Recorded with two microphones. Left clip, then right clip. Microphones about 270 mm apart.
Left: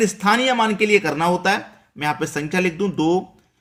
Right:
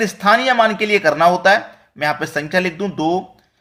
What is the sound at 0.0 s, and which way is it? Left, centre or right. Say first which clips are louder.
Speech: right 3 dB; centre.